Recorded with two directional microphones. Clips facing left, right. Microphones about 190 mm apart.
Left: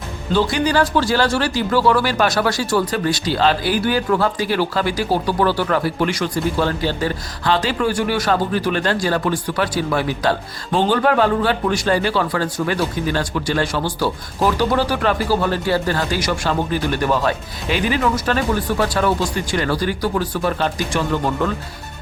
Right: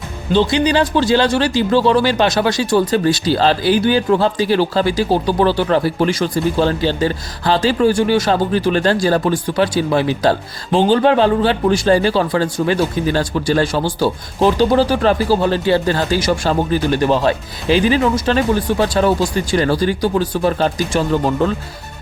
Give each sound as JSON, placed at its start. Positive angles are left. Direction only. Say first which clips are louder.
{"t": 0.3, "sound": "speech", "louder": "right 3 dB", "side_deg": -20}